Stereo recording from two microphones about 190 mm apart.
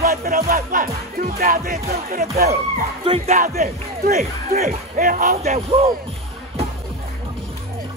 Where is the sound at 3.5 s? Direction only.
55° right (ahead or behind).